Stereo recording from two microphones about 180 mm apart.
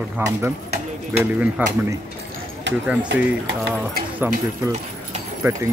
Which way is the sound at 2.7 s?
80° right.